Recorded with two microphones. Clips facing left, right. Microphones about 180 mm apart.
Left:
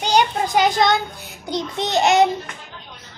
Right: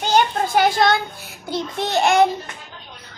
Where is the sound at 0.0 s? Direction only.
15° left (ahead or behind).